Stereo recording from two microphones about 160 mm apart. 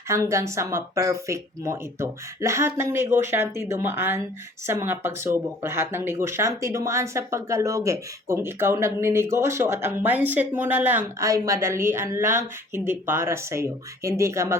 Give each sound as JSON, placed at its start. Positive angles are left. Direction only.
{"t": 0.1, "sound": "speech", "side_deg": -20}